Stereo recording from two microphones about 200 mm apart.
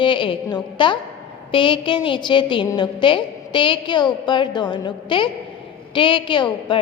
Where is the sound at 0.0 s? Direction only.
25° left (ahead or behind).